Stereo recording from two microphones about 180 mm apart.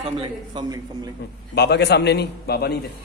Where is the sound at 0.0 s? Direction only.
25° right (ahead or behind).